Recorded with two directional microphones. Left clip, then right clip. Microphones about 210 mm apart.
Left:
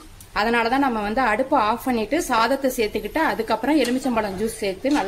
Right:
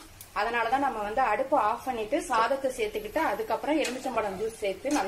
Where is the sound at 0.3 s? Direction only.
40° left (ahead or behind).